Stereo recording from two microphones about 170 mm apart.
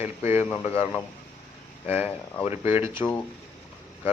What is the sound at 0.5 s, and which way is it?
Speech, 35° left (ahead or behind).